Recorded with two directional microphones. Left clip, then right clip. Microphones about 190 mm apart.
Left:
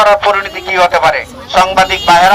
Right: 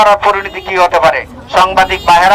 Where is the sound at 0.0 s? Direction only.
30° right (ahead or behind).